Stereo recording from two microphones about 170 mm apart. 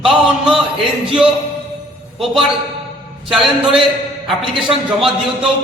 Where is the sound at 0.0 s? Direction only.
5° right (ahead or behind).